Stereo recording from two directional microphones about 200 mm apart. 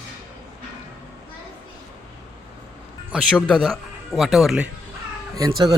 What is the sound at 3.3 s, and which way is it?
Speech, 5° left (ahead or behind).